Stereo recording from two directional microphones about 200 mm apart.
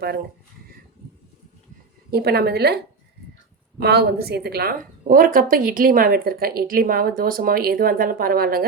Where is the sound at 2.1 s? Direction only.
50° right (ahead or behind).